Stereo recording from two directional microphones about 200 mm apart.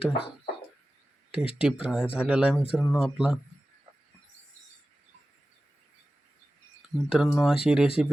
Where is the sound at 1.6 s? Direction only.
5° right (ahead or behind).